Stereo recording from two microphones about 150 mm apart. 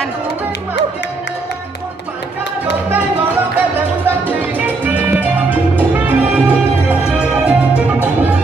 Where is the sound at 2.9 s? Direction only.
10° right (ahead or behind).